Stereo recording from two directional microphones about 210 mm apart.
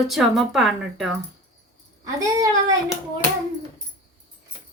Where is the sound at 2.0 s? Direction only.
15° right (ahead or behind).